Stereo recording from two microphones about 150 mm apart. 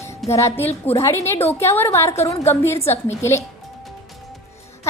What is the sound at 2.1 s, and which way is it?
Speech, 45° left (ahead or behind).